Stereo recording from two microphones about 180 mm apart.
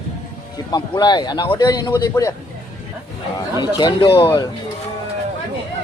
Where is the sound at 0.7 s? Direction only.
25° left (ahead or behind).